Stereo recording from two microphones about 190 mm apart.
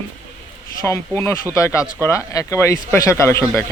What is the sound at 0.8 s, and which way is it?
Speech, 15° left (ahead or behind).